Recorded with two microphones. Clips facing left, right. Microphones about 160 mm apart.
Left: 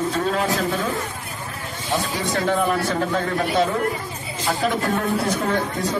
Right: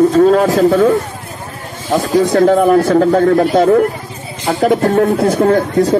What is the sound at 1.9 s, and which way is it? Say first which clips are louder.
Speech: right 12 dB; 40° right (ahead or behind).